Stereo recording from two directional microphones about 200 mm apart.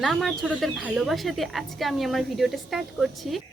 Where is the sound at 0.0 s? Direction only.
Centre (ahead or behind).